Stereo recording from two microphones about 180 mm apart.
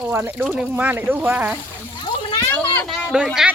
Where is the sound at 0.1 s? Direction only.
10° right (ahead or behind).